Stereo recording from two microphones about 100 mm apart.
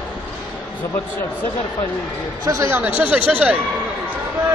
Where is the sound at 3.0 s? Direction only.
15° right (ahead or behind).